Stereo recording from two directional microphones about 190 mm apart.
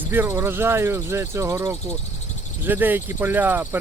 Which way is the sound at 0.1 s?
10° right (ahead or behind).